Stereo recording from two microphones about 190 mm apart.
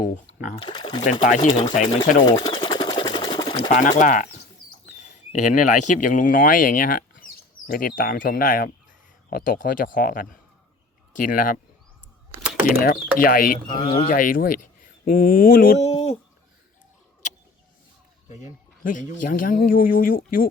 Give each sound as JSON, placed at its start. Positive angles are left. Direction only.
{"t": 0.0, "sound": "speech", "side_deg": 45}
{"t": 0.5, "sound": "speech", "side_deg": 25}
{"t": 1.2, "sound": "speech", "side_deg": 45}
{"t": 2.3, "sound": "sewing machine", "side_deg": 25}
{"t": 3.8, "sound": "speech", "side_deg": 40}
{"t": 12.6, "sound": "speech", "side_deg": 50}
{"t": 13.7, "sound": "speech", "side_deg": 30}
{"t": 14.1, "sound": "speech", "side_deg": 45}
{"t": 15.8, "sound": "a sound", "side_deg": 35}
{"t": 18.8, "sound": "speech", "side_deg": 45}